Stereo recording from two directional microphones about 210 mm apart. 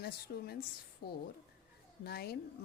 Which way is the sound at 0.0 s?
50° left (ahead or behind).